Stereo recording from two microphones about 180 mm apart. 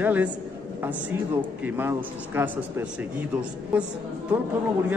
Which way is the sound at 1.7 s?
10° right (ahead or behind).